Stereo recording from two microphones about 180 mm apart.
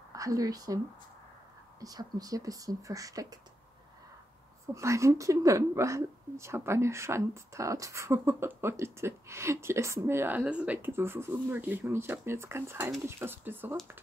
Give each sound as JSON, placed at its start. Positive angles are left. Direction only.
{"t": 0.1, "sound": "speech", "side_deg": -20}
{"t": 1.8, "sound": "speech", "side_deg": -20}
{"t": 4.7, "sound": "a woman's voice", "side_deg": -15}